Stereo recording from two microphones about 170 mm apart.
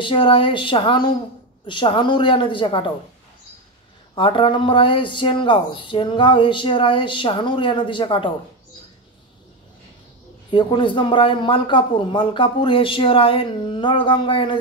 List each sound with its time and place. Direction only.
0.0 s speech: 30° left (ahead or behind)
4.1 s speech: 30° left (ahead or behind)
10.5 s speech: 30° left (ahead or behind)